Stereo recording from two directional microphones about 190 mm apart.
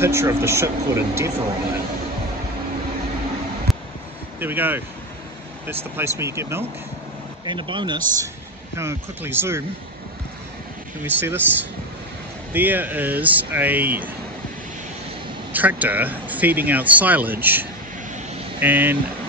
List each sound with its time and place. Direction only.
0.0 s speech: 15° right (ahead or behind)
3.7 s a sound: centre (ahead or behind)
4.4 s speech: 10° right (ahead or behind)
7.4 s speech: 25° right (ahead or behind)
8.7 s speech: 10° right (ahead or behind)
11.1 s speech: 10° right (ahead or behind)
12.5 s speech: 10° right (ahead or behind)
15.5 s speech: 10° right (ahead or behind)